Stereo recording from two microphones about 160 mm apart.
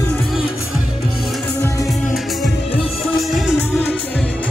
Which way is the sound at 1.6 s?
20° left (ahead or behind).